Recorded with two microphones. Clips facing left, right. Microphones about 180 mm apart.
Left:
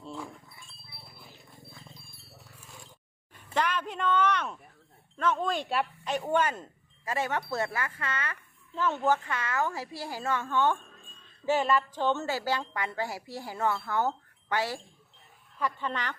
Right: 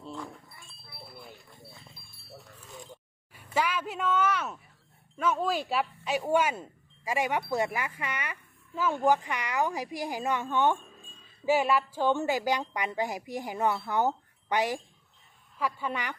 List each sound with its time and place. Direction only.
0.0 s sheep: 10° left (ahead or behind)
3.3 s a woman's voice: 10° right (ahead or behind)